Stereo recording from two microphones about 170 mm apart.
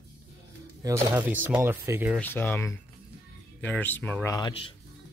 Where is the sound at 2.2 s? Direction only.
10° left (ahead or behind).